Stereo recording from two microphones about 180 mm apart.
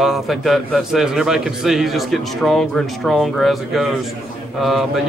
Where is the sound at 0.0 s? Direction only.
Centre (ahead or behind).